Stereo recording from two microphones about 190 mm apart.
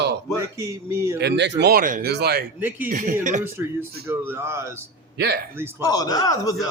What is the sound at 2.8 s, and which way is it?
Speech, 45° right (ahead or behind).